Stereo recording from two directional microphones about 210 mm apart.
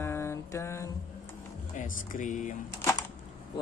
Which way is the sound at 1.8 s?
35° left (ahead or behind).